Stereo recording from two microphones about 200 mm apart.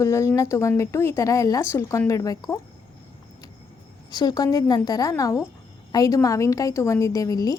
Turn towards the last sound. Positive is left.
turn(degrees=15)  # may be behind; listen again after turning